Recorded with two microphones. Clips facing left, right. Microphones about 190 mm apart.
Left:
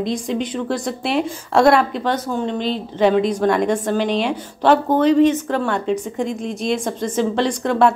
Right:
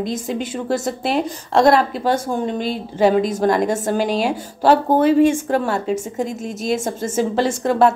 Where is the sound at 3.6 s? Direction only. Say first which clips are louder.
Left 1 dB; 45° right (ahead or behind).